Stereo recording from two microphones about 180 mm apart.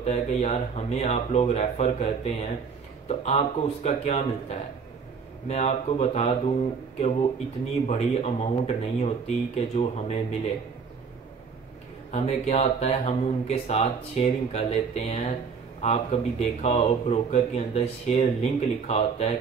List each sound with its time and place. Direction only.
0.0 s speech: 35° left (ahead or behind)
12.1 s speech: 40° left (ahead or behind)